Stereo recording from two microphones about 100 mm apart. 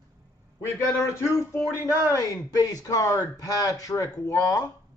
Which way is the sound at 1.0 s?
25° left (ahead or behind).